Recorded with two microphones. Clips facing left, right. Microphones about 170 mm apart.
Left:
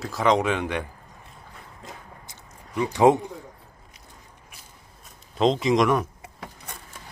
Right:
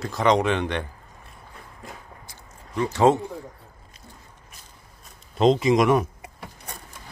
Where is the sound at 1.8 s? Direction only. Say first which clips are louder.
Right 1 dB; 20° left (ahead or behind).